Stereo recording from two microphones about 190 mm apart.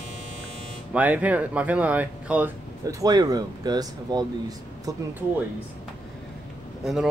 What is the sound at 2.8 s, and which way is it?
Speech, 20° right (ahead or behind).